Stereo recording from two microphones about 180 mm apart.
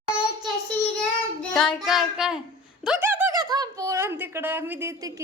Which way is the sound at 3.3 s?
20° right (ahead or behind).